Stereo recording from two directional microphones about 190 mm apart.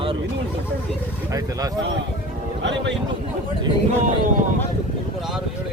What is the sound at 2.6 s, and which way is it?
Speech, 70° right (ahead or behind).